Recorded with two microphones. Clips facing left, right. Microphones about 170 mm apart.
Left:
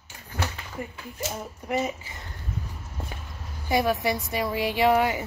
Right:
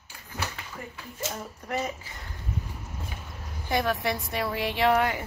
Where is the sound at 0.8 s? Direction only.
20° left (ahead or behind).